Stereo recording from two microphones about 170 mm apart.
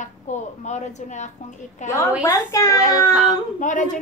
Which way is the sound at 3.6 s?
45° left (ahead or behind).